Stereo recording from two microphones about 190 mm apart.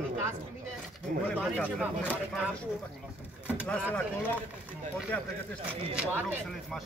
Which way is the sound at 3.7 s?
10° left (ahead or behind).